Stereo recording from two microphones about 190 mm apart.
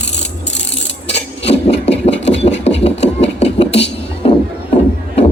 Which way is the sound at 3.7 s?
65° left (ahead or behind).